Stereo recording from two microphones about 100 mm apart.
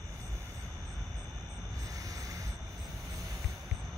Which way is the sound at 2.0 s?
35° right (ahead or behind).